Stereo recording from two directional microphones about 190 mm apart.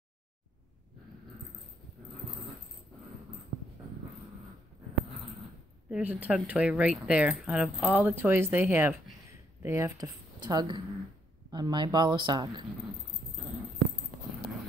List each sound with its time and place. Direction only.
5.9 s speech: 5° right (ahead or behind); by 12.6 s 25° right (ahead or behind)